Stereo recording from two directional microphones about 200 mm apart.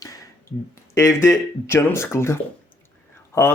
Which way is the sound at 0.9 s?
15° left (ahead or behind).